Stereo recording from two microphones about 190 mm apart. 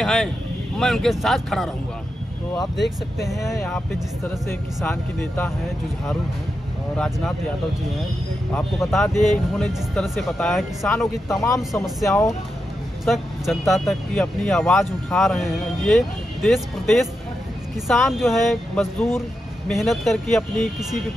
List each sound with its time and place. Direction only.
0.0 s speech: centre (ahead or behind)
3.2 s speech: centre (ahead or behind)
4.2 s speech: 15° left (ahead or behind)
8.9 s speech: centre (ahead or behind)
11.2 s speech: 15° left (ahead or behind)
11.7 s speech: centre (ahead or behind)
12.1 s speech: 15° left (ahead or behind)
13.0 s speech: centre (ahead or behind)